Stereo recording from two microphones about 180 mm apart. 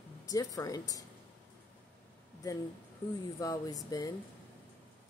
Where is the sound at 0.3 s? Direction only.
20° left (ahead or behind).